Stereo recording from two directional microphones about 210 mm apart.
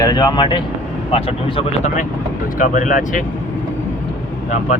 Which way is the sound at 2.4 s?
40° left (ahead or behind).